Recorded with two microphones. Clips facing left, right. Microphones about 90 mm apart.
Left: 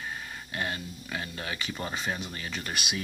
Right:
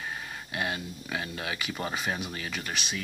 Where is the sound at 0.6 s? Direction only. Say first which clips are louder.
Right 1 dB; 15° right (ahead or behind).